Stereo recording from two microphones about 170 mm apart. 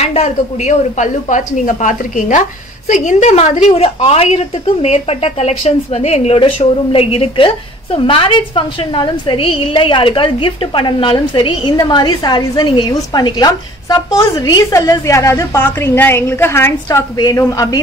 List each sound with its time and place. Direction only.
0.0 s a woman's voice: 40° left (ahead or behind); by 17.7 s 20° left (ahead or behind)